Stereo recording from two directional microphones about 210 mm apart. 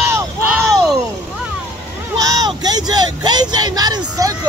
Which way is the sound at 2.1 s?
15° right (ahead or behind).